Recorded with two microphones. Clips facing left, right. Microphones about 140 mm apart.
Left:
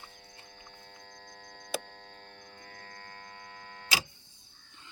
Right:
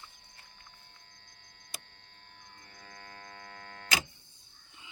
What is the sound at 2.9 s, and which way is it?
Hum, 30° left (ahead or behind).